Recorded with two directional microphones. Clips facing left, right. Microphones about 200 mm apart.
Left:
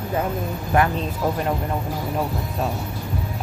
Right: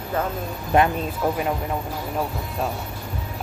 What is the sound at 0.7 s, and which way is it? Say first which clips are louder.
Speech: right 1 dB; 20° right (ahead or behind).